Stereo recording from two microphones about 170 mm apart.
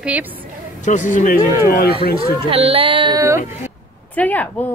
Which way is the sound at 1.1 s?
50° left (ahead or behind).